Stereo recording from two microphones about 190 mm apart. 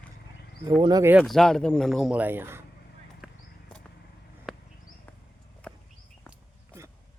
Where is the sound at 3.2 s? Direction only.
5° right (ahead or behind).